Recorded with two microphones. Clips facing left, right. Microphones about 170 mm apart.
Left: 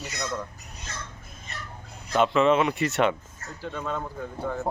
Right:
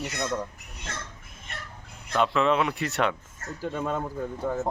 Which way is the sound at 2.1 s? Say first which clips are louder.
Left 3 dB; centre (ahead or behind).